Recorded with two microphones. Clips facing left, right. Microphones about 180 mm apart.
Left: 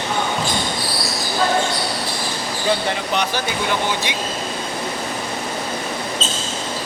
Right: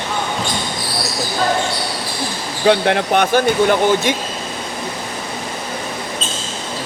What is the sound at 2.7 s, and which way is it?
Speech, 65° right (ahead or behind).